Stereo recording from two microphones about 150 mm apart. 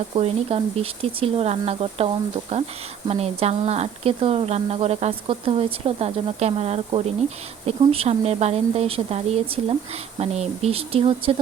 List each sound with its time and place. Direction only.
0.2 s a woman's voice: 40° right (ahead or behind)